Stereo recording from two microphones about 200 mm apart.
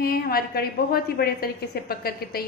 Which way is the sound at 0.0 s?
50° left (ahead or behind).